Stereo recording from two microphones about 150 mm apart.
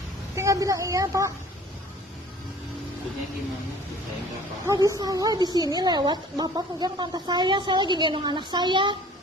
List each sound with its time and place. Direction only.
0.3 s a woman's voice: 20° right (ahead or behind)
4.6 s a woman's voice: 20° right (ahead or behind)